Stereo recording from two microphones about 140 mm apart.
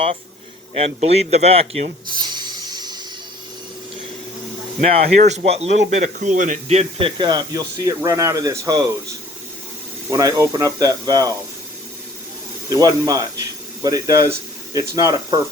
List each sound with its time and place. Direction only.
0.8 s speech: 50° right (ahead or behind)
2.3 s a sound: 30° right (ahead or behind)
4.8 s speech: 45° right (ahead or behind)
6.1 s speech: 60° right (ahead or behind)
7.2 s speech: 30° right (ahead or behind)
10.1 s speech: 25° right (ahead or behind)
12.7 s speech: 25° right (ahead or behind)